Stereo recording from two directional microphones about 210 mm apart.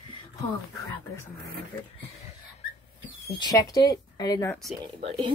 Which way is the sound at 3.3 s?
20° left (ahead or behind).